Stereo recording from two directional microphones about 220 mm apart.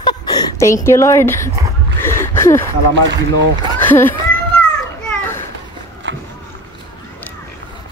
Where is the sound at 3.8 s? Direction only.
10° left (ahead or behind).